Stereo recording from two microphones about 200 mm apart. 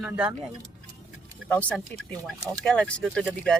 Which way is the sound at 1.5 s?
5° left (ahead or behind).